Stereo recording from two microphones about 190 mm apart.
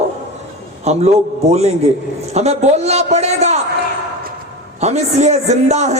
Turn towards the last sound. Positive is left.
turn(degrees=-35)  # may be behind; listen again after turning